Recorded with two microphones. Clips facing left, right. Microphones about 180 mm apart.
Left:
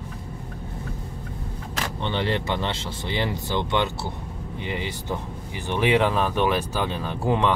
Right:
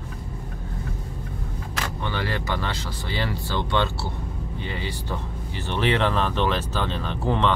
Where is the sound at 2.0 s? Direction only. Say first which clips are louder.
Left 4 dB; 25° left (ahead or behind).